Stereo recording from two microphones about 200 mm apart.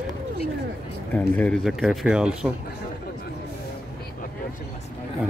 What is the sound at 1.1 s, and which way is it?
Speech, 5° left (ahead or behind).